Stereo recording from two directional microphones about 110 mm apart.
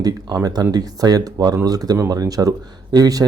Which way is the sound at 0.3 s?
30° right (ahead or behind).